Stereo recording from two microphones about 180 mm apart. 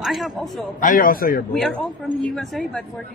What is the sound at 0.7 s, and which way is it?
Speech, 50° left (ahead or behind).